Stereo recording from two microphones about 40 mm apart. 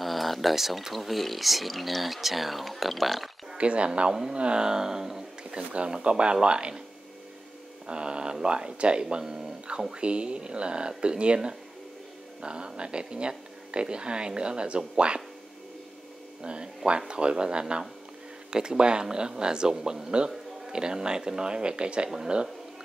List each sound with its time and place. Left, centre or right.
0.0 s speech: centre
3.5 s speech: right
4.1 s speech: centre
6.0 s speech: right
7.8 s speech: right
16.4 s speech: right